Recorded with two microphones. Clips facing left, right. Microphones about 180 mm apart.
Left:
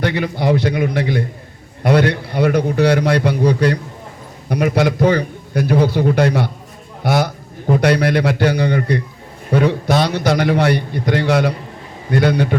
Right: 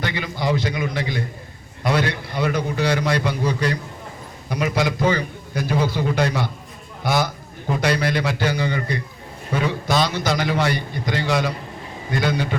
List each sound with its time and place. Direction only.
0.0 s a man's voice: 65° left (ahead or behind)